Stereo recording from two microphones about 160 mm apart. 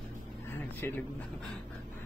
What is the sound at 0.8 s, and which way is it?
Speech, 15° left (ahead or behind).